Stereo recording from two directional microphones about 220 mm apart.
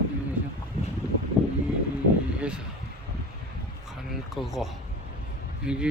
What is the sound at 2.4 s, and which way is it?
Vehicle, 5° right (ahead or behind).